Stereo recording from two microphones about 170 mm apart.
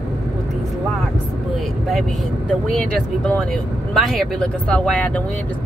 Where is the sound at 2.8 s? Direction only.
5° left (ahead or behind).